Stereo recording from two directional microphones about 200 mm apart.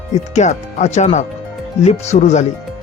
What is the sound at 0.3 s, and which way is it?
Speech, 35° left (ahead or behind).